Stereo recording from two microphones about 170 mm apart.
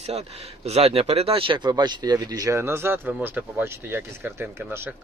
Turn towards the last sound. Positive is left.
turn(degrees=-10)  # may be behind; listen again after turning